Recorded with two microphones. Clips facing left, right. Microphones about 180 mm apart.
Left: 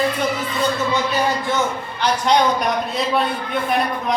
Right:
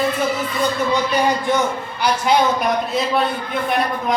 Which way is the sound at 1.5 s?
15° right (ahead or behind).